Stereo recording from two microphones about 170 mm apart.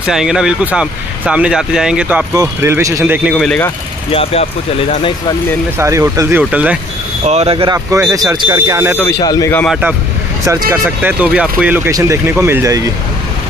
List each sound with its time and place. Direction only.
0.0 s speech: 5° right (ahead or behind)
3.3 s speech: 5° left (ahead or behind)
4.1 s speech: 35° left (ahead or behind)
5.8 s speech: 20° right (ahead or behind)
7.2 s speech: 40° right (ahead or behind)
8.1 s speech: 20° right (ahead or behind)
9.0 s speech: 20° left (ahead or behind)
9.7 s speech: 5° right (ahead or behind)